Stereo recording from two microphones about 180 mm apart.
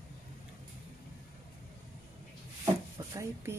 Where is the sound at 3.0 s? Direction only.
20° right (ahead or behind).